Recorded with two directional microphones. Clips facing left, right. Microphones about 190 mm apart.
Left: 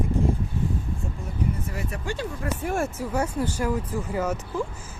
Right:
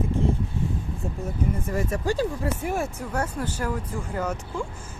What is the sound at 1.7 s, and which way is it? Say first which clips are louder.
Speech: right 6 dB; 45° right (ahead or behind).